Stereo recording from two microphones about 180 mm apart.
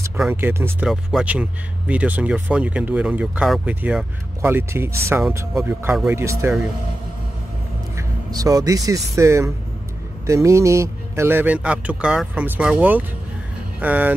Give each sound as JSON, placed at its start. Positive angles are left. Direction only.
{"t": 0.2, "sound": "speech", "side_deg": -10}
{"t": 8.3, "sound": "speech", "side_deg": -20}